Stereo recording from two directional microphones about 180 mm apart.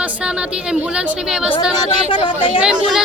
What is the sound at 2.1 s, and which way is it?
Speech, 25° left (ahead or behind).